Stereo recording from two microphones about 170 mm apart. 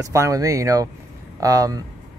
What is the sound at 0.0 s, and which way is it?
Speech, 20° right (ahead or behind).